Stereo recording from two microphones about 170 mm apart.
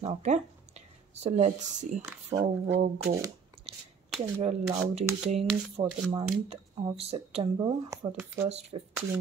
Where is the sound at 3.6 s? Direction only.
35° right (ahead or behind).